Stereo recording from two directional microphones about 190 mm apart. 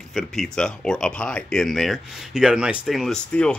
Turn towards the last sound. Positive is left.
turn(degrees=5)  # may be behind; listen again after turning